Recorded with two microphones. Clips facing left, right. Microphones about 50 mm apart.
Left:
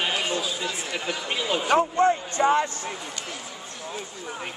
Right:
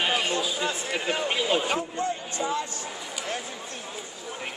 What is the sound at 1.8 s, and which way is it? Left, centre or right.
Speech, left.